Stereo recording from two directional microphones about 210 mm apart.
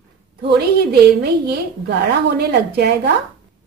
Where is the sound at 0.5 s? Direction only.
50° right (ahead or behind).